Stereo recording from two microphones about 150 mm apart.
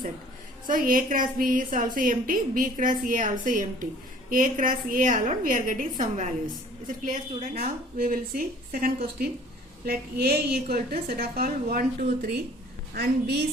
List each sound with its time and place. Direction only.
0.7 s a woman's voice: 65° right (ahead or behind)
7.5 s speech: 75° right (ahead or behind)
9.8 s a woman's voice: 90° right; by 12.3 s 75° right (ahead or behind)
12.9 s a woman's voice: 90° right